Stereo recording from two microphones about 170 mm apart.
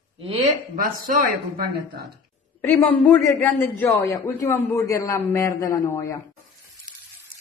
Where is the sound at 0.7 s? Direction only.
55° right (ahead or behind).